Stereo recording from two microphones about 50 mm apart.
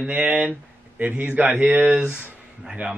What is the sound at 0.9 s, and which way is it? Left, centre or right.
Speech, right.